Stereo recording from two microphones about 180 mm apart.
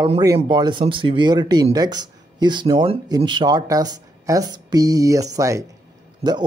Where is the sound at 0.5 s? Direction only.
25° right (ahead or behind).